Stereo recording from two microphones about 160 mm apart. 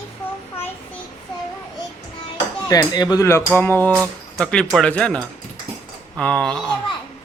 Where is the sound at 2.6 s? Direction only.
25° left (ahead or behind).